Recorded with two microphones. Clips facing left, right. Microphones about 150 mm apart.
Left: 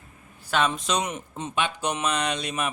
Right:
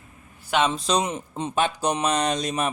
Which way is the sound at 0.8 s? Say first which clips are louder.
Right 3 dB; 35° right (ahead or behind).